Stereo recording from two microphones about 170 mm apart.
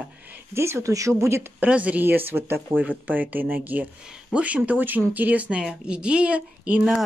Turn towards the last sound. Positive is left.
turn(degrees=-5)  # may be behind; listen again after turning